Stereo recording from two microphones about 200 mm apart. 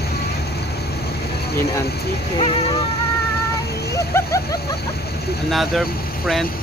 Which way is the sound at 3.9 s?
15° left (ahead or behind).